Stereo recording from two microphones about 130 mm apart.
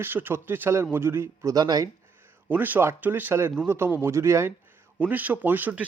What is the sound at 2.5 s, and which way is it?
A man's voice, 15° right (ahead or behind).